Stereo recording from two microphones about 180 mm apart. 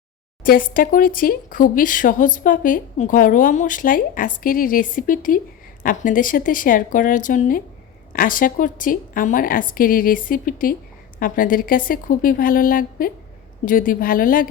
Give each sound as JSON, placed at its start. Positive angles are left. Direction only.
{"t": 0.4, "sound": "speech", "side_deg": 55}